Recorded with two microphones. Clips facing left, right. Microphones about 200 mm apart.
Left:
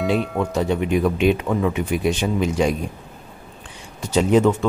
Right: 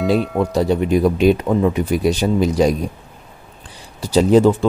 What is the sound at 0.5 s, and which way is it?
Speech, 35° right (ahead or behind).